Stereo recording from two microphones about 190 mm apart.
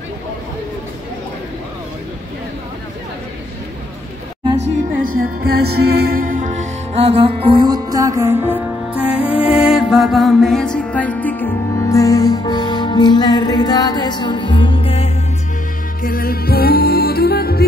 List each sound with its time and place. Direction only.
5.2 s music: 55° right (ahead or behind); by 15.0 s 30° left (ahead or behind)
16.0 s music: 50° left (ahead or behind)